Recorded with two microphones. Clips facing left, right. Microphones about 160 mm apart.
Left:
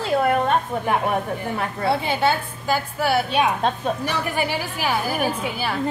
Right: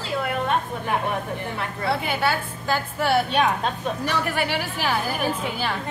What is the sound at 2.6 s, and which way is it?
A woman's voice, 10° left (ahead or behind).